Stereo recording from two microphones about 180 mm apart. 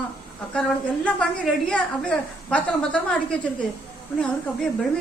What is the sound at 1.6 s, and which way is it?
A woman's voice, 5° left (ahead or behind).